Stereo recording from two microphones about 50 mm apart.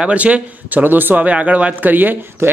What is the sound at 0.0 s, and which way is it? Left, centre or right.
Speech, right.